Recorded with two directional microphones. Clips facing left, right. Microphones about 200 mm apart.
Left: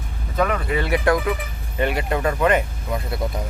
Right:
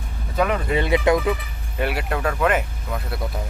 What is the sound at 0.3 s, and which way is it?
Speech, 15° right (ahead or behind).